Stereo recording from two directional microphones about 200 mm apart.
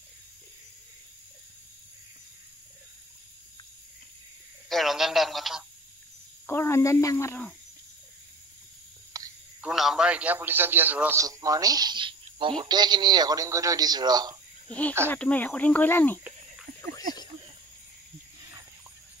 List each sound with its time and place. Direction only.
4.6 s speech: centre (ahead or behind)
6.4 s speech: 10° left (ahead or behind)
9.1 s a sound: 15° right (ahead or behind)
9.6 s a man's voice: centre (ahead or behind); by 14.3 s 20° right (ahead or behind)
14.7 s speech: 5° left (ahead or behind)
16.8 s a sound: 20° left (ahead or behind)